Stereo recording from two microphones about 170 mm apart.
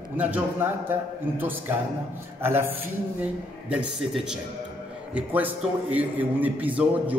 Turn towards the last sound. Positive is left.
turn(degrees=-10)  # may be behind; listen again after turning